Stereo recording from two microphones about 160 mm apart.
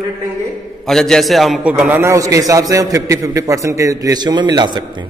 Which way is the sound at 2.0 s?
20° right (ahead or behind).